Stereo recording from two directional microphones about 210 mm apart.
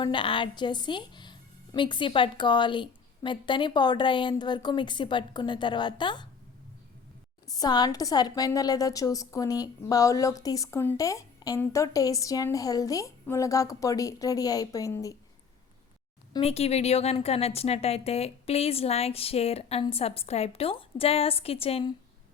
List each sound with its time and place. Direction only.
0.0 s a woman's voice: 25° left (ahead or behind)
7.4 s a woman's voice: 20° left (ahead or behind)
16.3 s a woman's voice: 30° left (ahead or behind)